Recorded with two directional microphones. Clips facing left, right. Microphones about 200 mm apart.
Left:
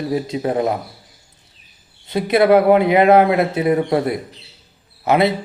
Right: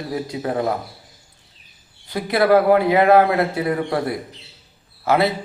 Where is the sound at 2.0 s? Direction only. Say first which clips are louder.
Left 3 dB; 20° left (ahead or behind).